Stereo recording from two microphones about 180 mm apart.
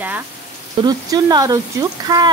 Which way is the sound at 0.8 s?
20° right (ahead or behind).